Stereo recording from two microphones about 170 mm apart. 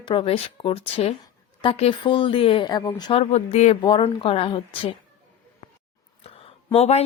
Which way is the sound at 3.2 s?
40° left (ahead or behind).